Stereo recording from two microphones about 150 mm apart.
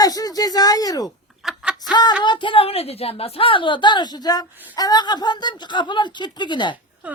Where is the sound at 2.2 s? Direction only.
30° left (ahead or behind).